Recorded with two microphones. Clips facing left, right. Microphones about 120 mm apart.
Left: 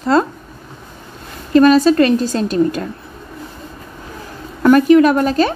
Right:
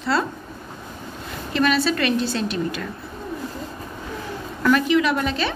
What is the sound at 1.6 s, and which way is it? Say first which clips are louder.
A woman's voice: left 11 dB; 40° left (ahead or behind).